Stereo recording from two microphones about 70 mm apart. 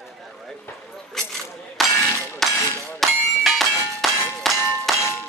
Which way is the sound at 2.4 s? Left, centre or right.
Centre.